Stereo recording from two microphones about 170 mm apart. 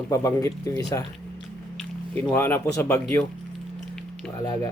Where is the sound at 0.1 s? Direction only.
15° left (ahead or behind).